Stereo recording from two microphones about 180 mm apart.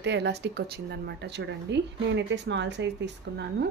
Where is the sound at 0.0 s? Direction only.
70° right (ahead or behind).